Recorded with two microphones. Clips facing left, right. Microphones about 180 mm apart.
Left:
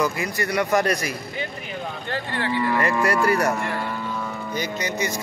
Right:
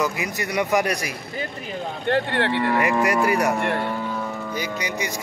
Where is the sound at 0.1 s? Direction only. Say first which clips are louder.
Left 1 dB; 15° right (ahead or behind).